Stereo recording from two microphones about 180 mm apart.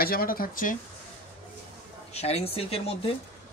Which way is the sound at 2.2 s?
35° left (ahead or behind).